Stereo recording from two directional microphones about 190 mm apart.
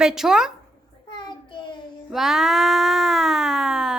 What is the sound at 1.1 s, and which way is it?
Child singing, 25° left (ahead or behind).